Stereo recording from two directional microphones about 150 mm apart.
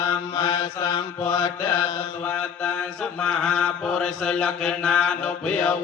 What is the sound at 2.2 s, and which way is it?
Mantra, 10° left (ahead or behind).